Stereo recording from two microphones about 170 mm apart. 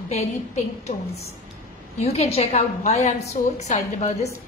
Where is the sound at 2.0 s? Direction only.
40° left (ahead or behind).